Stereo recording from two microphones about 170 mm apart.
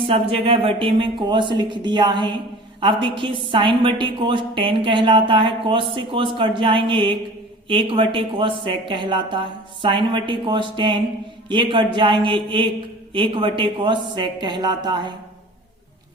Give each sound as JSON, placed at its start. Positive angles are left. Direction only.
{"t": 0.1, "sound": "a woman's voice", "side_deg": -35}